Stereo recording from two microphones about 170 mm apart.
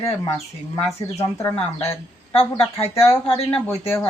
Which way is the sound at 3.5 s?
15° left (ahead or behind).